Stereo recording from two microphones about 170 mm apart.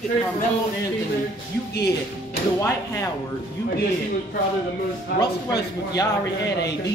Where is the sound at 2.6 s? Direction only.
20° left (ahead or behind).